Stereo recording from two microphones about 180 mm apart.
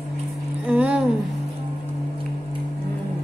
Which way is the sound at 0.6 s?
5° right (ahead or behind).